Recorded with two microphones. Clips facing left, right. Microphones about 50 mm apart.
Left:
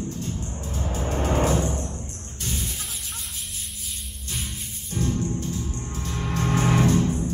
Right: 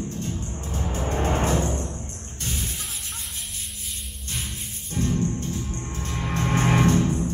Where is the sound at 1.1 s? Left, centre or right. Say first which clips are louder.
Left 1 dB; right.